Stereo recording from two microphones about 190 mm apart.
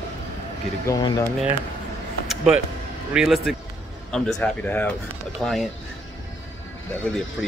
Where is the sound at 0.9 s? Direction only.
20° left (ahead or behind).